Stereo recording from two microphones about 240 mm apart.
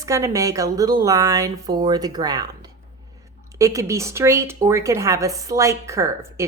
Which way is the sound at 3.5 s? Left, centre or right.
Centre.